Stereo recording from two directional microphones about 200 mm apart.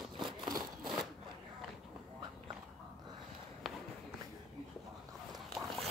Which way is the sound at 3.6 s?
Centre (ahead or behind).